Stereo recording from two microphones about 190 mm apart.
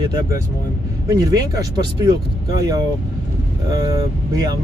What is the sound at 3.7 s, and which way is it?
Speech, 20° right (ahead or behind).